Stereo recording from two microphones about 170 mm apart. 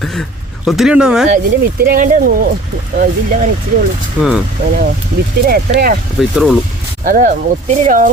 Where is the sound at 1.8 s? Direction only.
60° right (ahead or behind).